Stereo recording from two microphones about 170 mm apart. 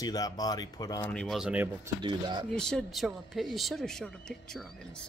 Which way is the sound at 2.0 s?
25° right (ahead or behind).